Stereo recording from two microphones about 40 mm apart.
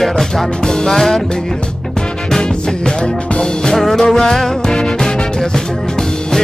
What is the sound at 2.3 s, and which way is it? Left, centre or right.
Music, centre.